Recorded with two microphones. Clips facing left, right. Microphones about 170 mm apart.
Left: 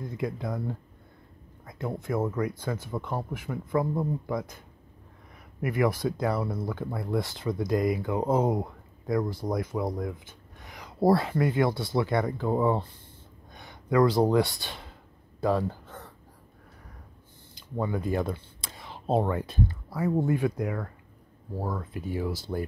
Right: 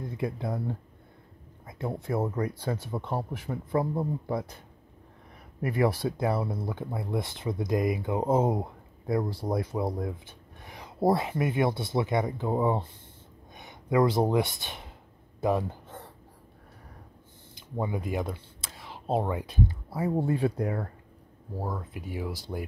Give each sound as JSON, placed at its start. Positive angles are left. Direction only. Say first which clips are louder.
{"t": 0.2, "sound": "speech", "louder": "even", "side_deg": -25}
{"t": 5.6, "sound": "speech", "louder": "even", "side_deg": -30}
{"t": 9.9, "sound": "a sound", "louder": "even", "side_deg": -30}
{"t": 11.1, "sound": "speech", "louder": "left 2 dB", "side_deg": -20}
{"t": 15.4, "sound": "a sound", "louder": "left 1 dB", "side_deg": -20}
{"t": 17.6, "sound": "speech", "louder": "left 1 dB", "side_deg": -15}
{"t": 19.9, "sound": "speech", "louder": "left 3 dB", "side_deg": -25}
{"t": 21.5, "sound": "speech", "louder": "left 2 dB", "side_deg": -10}